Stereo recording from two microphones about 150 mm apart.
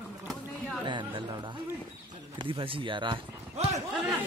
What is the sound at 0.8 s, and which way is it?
Speech, 30° right (ahead or behind).